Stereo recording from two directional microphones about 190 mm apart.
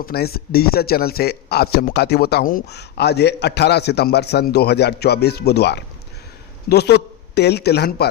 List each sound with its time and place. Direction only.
0.0 s a man's voice: 55° left (ahead or behind)